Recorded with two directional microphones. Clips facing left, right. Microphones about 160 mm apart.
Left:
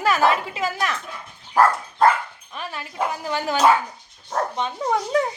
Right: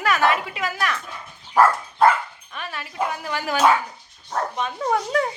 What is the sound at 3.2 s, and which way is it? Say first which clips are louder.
Speech: left 2 dB; 25° left (ahead or behind).